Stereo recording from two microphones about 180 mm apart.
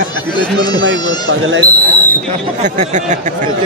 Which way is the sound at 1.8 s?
10° left (ahead or behind).